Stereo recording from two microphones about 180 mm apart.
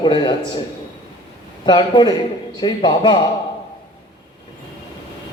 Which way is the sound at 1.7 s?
25° left (ahead or behind).